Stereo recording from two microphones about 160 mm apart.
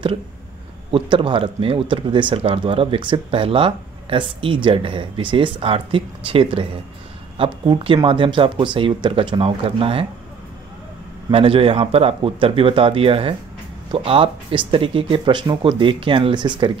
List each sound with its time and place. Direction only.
0.9 s speech: 30° right (ahead or behind)
11.2 s speech: 35° right (ahead or behind)